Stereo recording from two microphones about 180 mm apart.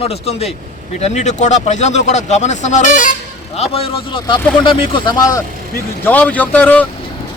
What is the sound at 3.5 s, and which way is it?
Speech, 35° left (ahead or behind).